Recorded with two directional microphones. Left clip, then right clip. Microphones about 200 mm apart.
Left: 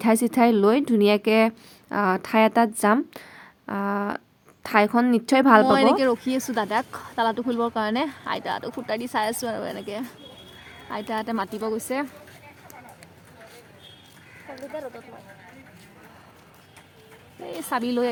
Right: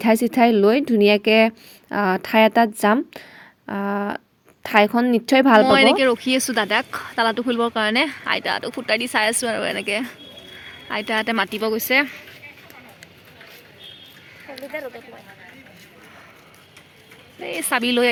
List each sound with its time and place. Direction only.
0.0 s a woman's voice: 15° right (ahead or behind)
5.7 s speech: 5° left (ahead or behind)
17.4 s speech: centre (ahead or behind)